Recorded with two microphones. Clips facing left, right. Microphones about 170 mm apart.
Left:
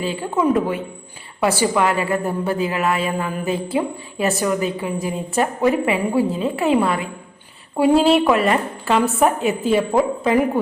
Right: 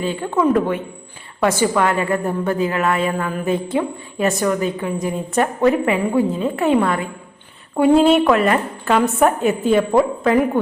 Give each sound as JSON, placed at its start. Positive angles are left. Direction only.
{"t": 0.0, "sound": "a woman's voice", "side_deg": 10}